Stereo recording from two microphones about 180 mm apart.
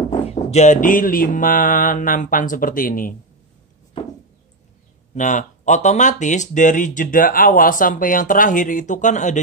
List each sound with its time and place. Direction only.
0.2 s speech: 35° left (ahead or behind)
5.1 s speech: 40° left (ahead or behind)